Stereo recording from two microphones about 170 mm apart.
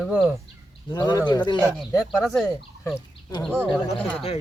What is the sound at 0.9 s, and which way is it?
Speech, 25° left (ahead or behind).